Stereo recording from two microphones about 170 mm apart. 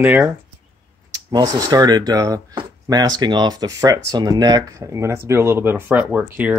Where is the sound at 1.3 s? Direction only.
20° right (ahead or behind).